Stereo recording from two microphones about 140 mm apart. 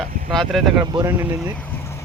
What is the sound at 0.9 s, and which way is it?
Speech, 20° right (ahead or behind).